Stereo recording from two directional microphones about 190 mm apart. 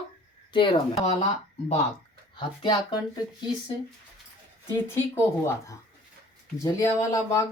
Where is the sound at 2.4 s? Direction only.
20° left (ahead or behind).